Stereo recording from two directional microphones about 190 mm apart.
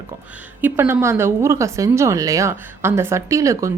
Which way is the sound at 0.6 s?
10° right (ahead or behind).